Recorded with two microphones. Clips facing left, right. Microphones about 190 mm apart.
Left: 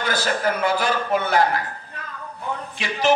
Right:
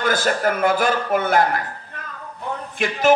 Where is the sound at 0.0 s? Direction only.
50° right (ahead or behind).